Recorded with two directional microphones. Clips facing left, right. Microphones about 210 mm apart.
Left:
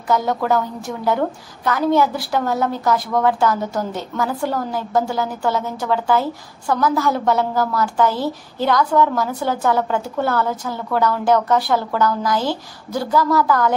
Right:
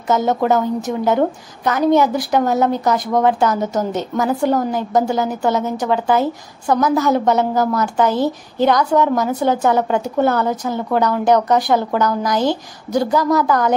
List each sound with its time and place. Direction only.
0.1 s a woman's voice: 25° right (ahead or behind)